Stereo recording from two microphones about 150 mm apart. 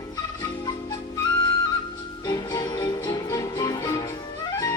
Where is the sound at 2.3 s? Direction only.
25° left (ahead or behind).